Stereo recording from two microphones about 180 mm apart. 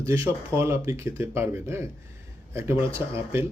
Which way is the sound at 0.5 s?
15° right (ahead or behind).